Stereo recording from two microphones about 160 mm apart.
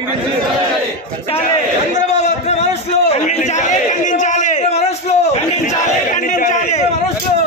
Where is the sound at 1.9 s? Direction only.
45° left (ahead or behind).